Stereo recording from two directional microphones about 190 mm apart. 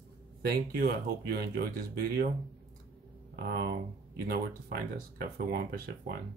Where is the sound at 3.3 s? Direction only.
60° right (ahead or behind).